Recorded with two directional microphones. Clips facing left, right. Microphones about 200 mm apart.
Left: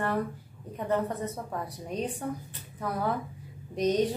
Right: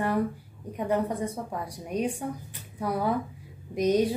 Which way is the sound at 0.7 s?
10° right (ahead or behind).